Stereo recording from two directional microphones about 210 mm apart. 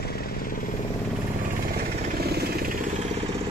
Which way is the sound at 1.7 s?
50° right (ahead or behind).